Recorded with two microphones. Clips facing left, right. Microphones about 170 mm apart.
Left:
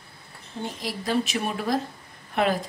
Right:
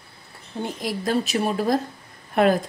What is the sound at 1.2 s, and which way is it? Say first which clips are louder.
Speech: right 5 dB; 35° right (ahead or behind).